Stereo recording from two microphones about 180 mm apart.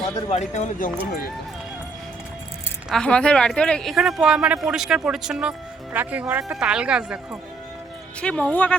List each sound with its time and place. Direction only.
0.3 s speech: 40° left (ahead or behind)
2.9 s speech: 5° left (ahead or behind)
8.2 s speech: 5° left (ahead or behind)